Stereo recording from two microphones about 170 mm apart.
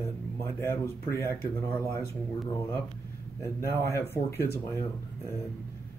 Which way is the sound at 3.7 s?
15° left (ahead or behind).